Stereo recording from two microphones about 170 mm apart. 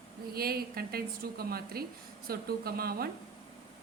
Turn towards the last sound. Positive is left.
turn(degrees=-65)  # may be behind; listen again after turning